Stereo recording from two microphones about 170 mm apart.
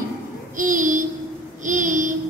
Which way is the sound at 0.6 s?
50° right (ahead or behind).